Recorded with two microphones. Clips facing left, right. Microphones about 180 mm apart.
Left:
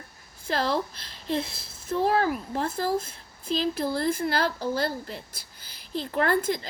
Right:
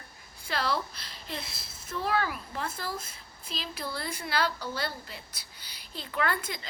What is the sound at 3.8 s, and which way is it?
Speech, 50° left (ahead or behind).